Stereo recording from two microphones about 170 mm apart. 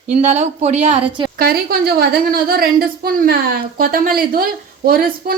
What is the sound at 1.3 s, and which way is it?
A woman's voice, 60° right (ahead or behind).